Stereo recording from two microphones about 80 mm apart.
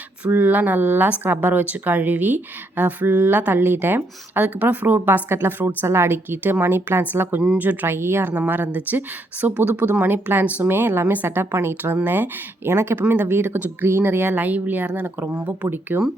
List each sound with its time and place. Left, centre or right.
0.3 s speech: right